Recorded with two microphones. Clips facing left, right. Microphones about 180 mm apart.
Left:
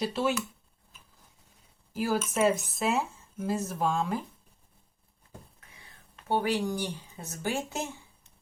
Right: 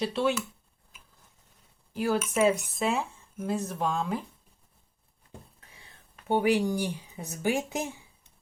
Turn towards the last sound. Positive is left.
turn(degrees=-15)  # may be behind; listen again after turning